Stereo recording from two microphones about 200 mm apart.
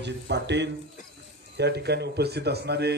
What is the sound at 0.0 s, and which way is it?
A man's voice, 60° right (ahead or behind).